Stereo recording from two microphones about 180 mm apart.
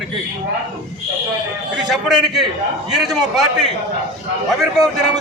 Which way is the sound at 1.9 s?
Centre (ahead or behind).